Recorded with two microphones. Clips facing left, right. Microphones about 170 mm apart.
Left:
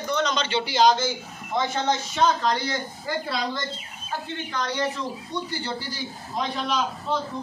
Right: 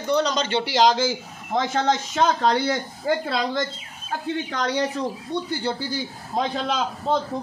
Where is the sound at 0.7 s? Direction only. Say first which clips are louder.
Even; 90° right.